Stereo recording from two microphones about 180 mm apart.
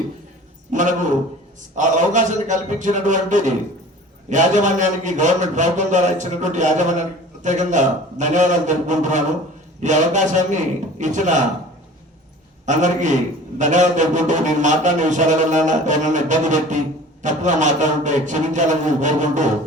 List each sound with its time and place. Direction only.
0.7 s a man's voice: 45° right (ahead or behind)
12.6 s a man's voice: 45° right (ahead or behind)